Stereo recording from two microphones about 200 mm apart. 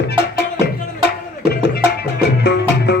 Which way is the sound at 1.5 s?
55° left (ahead or behind).